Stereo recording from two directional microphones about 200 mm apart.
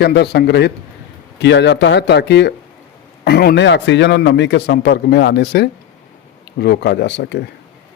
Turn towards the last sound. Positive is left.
turn(degrees=60)  # may be behind; listen again after turning